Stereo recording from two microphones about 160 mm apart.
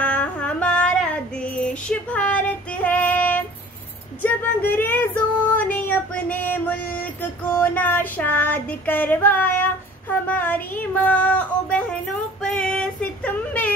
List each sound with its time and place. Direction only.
0.0 s female singing: 10° left (ahead or behind)
4.2 s a sound: 10° left (ahead or behind)
5.7 s female singing: 10° left (ahead or behind)
10.2 s child singing: 10° left (ahead or behind)
12.4 s female singing: 5° left (ahead or behind)